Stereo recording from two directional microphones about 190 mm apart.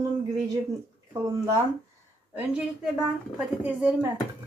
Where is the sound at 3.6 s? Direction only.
10° right (ahead or behind).